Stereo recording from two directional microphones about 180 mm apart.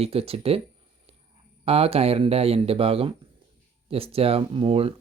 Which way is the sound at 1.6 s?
35° right (ahead or behind).